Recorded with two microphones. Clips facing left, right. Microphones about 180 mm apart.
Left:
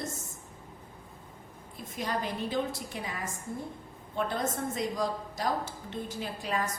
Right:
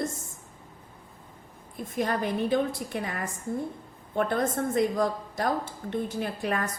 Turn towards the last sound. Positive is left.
turn(degrees=-55)  # may be behind; listen again after turning